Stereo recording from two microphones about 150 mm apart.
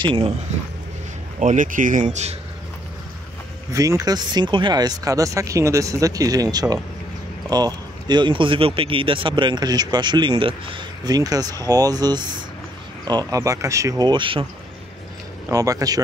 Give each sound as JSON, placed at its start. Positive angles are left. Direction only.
{"t": 0.0, "sound": "speech", "side_deg": -35}
{"t": 1.4, "sound": "speech", "side_deg": -60}
{"t": 3.7, "sound": "speech", "side_deg": -25}
{"t": 15.4, "sound": "speech", "side_deg": -20}